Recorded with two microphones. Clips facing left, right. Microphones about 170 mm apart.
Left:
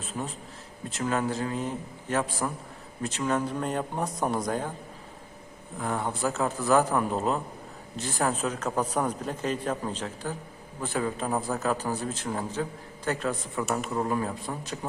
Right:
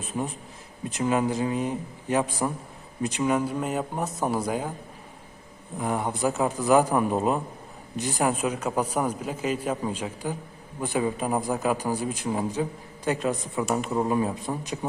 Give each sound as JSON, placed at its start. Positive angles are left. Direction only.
{"t": 0.0, "sound": "a man's voice", "side_deg": -15}
{"t": 5.8, "sound": "a man's voice", "side_deg": -15}